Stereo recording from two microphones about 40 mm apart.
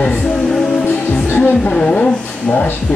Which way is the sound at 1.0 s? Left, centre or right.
Left.